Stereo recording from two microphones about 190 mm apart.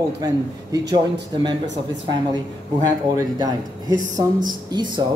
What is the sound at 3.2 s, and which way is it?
A man's voice, 20° right (ahead or behind).